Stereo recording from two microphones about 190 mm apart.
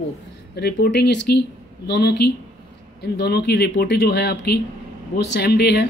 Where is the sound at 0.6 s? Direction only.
55° left (ahead or behind).